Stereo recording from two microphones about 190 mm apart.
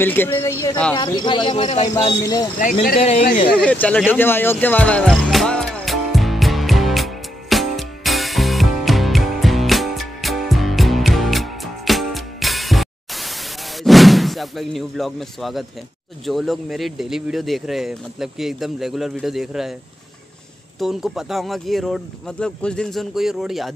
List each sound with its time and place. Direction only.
0.0 s speech: 10° left (ahead or behind)
0.9 s speech: 25° left (ahead or behind)
2.6 s speech: 50° left (ahead or behind)
3.0 s speech: 35° left (ahead or behind)
3.5 s speech: 5° left (ahead or behind)
4.1 s music: 10° left (ahead or behind)
13.8 s speech: centre (ahead or behind)
20.8 s speech: centre (ahead or behind)